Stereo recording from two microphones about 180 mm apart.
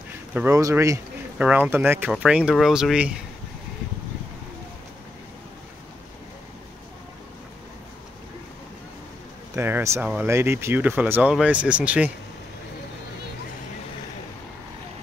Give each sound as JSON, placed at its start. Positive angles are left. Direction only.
{"t": 0.3, "sound": "speech", "side_deg": -10}
{"t": 9.6, "sound": "speech", "side_deg": -15}